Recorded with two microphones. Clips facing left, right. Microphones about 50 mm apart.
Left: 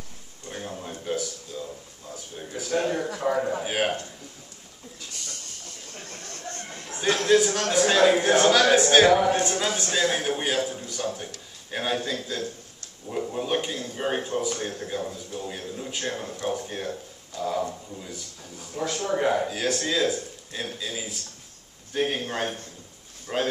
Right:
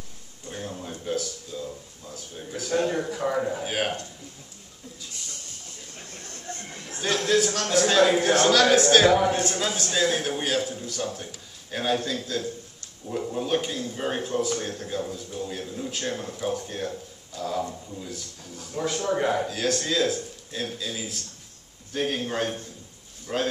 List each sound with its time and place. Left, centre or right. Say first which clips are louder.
0.5 s a sound: even; centre
1.0 s a man's voice: even; centre
3.6 s a man's voice: left 2 dB; centre
7.2 s a man's voice: left 3 dB; centre
9.8 s speech: right 2 dB; left
10.2 s a man's voice: left 1 dB; centre
17.4 s a sound: left 2 dB; centre
18.0 s a man's voice: right 1 dB; centre